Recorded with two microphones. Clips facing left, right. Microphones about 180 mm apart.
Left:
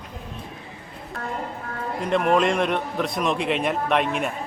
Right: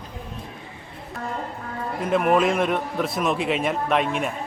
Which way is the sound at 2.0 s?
5° right (ahead or behind).